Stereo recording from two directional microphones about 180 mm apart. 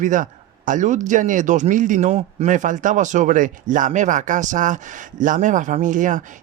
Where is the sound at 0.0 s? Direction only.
45° right (ahead or behind).